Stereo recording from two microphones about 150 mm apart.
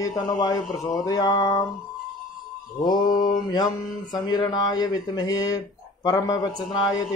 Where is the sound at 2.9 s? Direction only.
30° left (ahead or behind).